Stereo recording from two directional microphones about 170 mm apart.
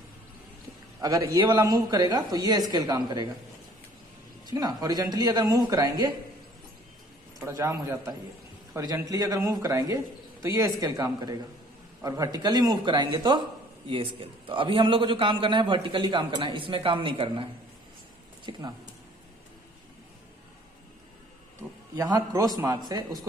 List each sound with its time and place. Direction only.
1.0 s a man's voice: 20° right (ahead or behind)
4.5 s a man's voice: 20° right (ahead or behind)
7.3 s a man's voice: 20° right (ahead or behind)
18.5 s a man's voice: 25° right (ahead or behind)
21.9 s a man's voice: 20° right (ahead or behind)